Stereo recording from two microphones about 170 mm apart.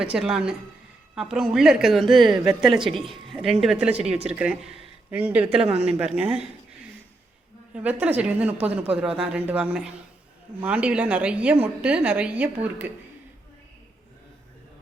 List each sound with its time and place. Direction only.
0.0 s a woman's voice: 5° right (ahead or behind)
7.7 s a woman's voice: 10° right (ahead or behind)